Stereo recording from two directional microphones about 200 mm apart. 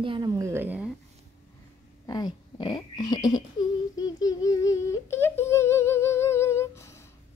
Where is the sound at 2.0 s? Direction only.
20° left (ahead or behind).